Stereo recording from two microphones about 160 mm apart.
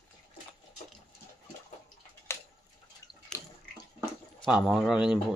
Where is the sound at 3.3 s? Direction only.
20° left (ahead or behind).